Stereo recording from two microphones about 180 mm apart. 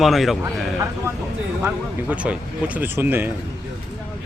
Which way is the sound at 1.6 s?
10° right (ahead or behind).